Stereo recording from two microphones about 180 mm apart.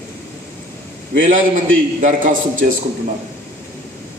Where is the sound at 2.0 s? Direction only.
45° right (ahead or behind).